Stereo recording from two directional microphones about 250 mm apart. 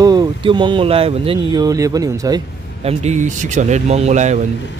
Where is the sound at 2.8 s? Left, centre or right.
Right.